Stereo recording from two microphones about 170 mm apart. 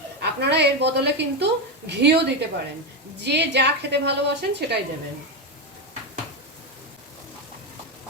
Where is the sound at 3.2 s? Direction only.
85° right.